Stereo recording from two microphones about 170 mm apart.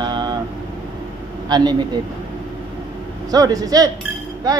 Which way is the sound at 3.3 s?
20° right (ahead or behind).